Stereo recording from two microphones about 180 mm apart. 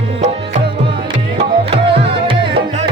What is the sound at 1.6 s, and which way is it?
Music, 30° right (ahead or behind).